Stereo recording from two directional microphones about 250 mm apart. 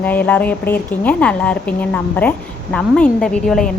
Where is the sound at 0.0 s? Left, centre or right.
Centre.